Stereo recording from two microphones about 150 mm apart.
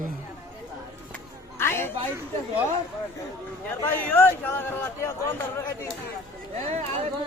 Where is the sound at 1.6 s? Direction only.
15° left (ahead or behind).